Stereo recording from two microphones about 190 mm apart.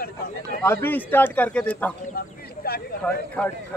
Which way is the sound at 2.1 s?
55° left (ahead or behind).